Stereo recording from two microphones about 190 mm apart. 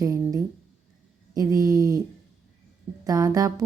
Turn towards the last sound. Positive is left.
turn(degrees=-20)  # may be behind; listen again after turning